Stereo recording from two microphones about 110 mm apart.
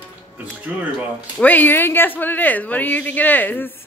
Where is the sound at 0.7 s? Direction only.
15° right (ahead or behind).